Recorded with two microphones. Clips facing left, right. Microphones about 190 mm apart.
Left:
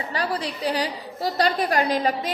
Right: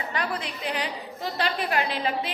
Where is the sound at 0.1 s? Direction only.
35° left (ahead or behind).